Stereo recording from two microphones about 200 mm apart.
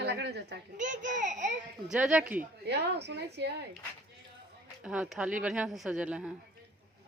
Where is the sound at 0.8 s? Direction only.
40° right (ahead or behind).